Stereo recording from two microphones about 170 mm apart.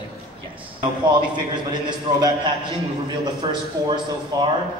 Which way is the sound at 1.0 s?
25° right (ahead or behind).